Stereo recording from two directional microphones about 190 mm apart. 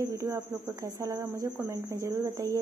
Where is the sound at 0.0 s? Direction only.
15° right (ahead or behind).